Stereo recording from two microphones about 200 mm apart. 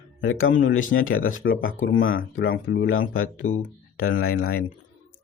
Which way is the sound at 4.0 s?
90° left.